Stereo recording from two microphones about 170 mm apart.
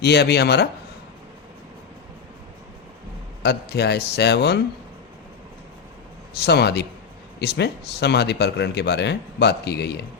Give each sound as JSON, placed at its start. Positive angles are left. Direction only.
{"t": 0.0, "sound": "speech", "side_deg": 75}
{"t": 3.4, "sound": "speech", "side_deg": 75}
{"t": 6.4, "sound": "speech", "side_deg": 75}